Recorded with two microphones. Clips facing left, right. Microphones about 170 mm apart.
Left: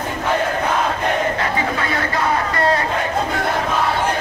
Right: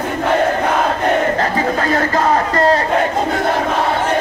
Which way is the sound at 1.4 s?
40° right (ahead or behind).